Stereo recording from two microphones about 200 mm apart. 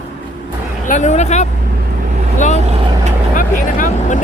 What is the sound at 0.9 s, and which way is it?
Speech, 35° left (ahead or behind).